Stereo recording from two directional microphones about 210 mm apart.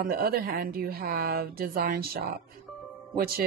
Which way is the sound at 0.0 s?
45° right (ahead or behind).